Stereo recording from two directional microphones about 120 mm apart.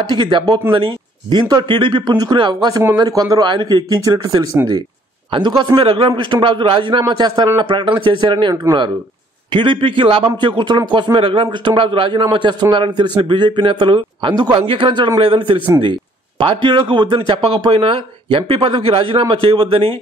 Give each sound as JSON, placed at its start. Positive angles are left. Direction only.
{"t": 0.1, "sound": "a man's voice", "side_deg": -40}
{"t": 2.8, "sound": "a man's voice", "side_deg": -30}